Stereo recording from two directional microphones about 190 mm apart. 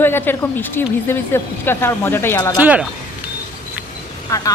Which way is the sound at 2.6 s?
5° right (ahead or behind).